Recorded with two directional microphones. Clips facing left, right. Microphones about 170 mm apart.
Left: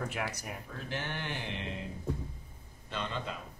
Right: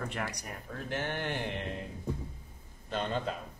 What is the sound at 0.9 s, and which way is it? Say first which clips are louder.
Speech: right 4 dB; 45° right (ahead or behind).